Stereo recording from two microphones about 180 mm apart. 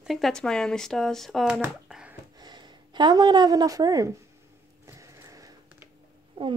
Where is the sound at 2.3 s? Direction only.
25° right (ahead or behind).